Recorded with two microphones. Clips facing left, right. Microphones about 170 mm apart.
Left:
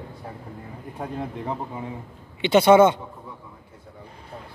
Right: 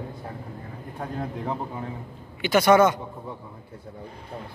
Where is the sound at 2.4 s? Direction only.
25° left (ahead or behind).